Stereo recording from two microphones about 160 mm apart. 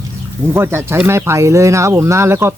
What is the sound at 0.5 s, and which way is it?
Speech, 15° right (ahead or behind).